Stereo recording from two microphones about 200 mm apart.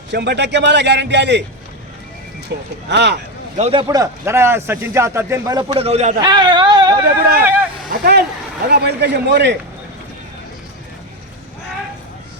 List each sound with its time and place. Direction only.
0.1 s a man's voice: 60° right (ahead or behind)
2.5 s a man's voice: 55° right (ahead or behind)
3.6 s a man's voice: 25° right (ahead or behind)
6.2 s speech: 20° right (ahead or behind)
7.2 s speech: 50° right (ahead or behind)
7.4 s a sound: 10° right (ahead or behind)
8.6 s a man's voice: 55° right (ahead or behind)